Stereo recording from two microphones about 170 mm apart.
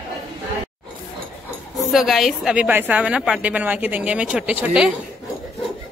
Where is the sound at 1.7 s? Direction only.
Centre (ahead or behind).